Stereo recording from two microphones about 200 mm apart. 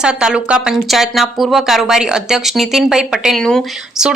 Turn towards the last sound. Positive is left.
turn(degrees=0)  # may be behind; listen again after turning